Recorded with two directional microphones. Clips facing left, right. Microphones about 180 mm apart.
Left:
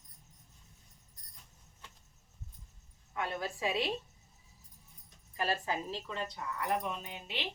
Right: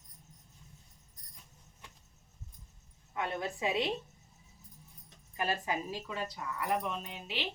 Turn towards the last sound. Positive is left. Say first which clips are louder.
# right 1 dB
turn(degrees=0)  # may be behind; listen again after turning